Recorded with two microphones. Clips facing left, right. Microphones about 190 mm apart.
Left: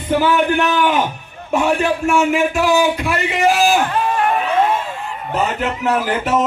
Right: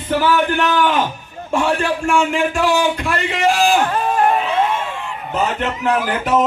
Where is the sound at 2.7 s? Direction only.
5° left (ahead or behind).